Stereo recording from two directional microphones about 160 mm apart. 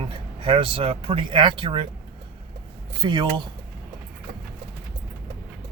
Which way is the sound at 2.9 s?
30° right (ahead or behind).